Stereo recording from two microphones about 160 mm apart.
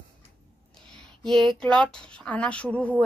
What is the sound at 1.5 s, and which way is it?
A woman's voice, 5° left (ahead or behind).